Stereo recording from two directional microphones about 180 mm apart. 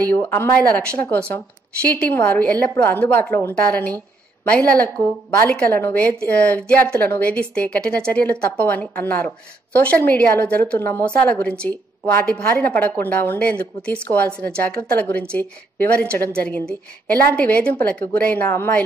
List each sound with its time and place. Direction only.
0.0 s a woman's voice: 10° left (ahead or behind)